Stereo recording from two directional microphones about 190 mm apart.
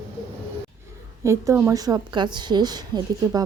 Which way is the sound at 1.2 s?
15° right (ahead or behind).